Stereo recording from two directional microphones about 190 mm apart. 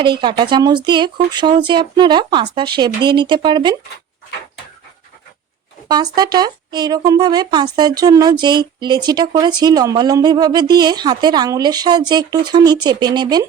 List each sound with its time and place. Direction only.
0.0 s speech: 25° right (ahead or behind)
5.9 s speech: 20° right (ahead or behind)